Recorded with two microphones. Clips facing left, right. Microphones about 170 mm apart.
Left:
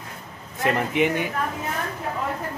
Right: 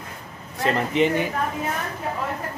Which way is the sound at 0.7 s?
10° left (ahead or behind).